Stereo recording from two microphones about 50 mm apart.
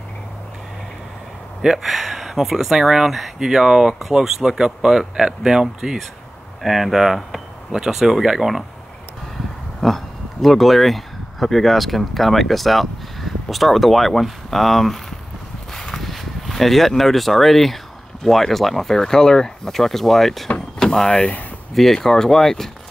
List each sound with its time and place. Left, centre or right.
1.6 s speech: centre
6.6 s speech: centre
9.8 s speech: centre
15.7 s a sound: centre
18.2 s speech: centre
20.4 s vehicle: centre
21.2 s speech: left
21.7 s speech: centre